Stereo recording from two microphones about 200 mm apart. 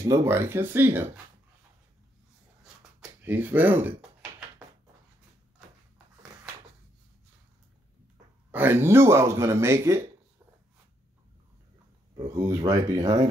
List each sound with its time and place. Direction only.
0.0 s speech: 15° right (ahead or behind)
2.6 s a sound: 5° right (ahead or behind)
8.5 s speech: 10° right (ahead or behind)
12.4 s speech: 15° right (ahead or behind)